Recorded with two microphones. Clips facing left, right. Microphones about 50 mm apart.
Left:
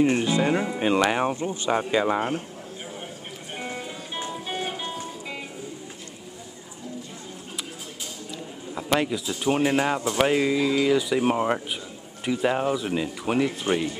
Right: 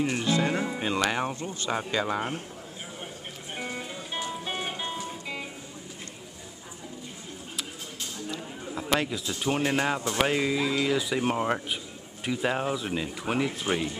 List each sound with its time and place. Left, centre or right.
0.2 s speech: centre
4.3 s music: centre
8.3 s speech: centre